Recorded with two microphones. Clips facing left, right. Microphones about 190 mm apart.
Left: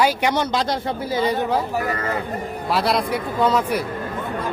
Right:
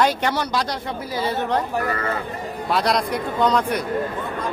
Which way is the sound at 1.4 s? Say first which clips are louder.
Left 1 dB; 5° left (ahead or behind).